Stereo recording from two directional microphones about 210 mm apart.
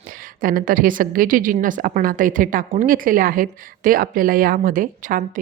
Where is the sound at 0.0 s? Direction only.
40° right (ahead or behind).